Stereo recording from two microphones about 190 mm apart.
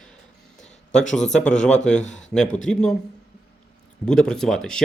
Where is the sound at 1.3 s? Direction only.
5° left (ahead or behind).